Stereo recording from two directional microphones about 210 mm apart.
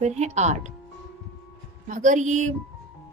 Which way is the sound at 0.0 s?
30° right (ahead or behind).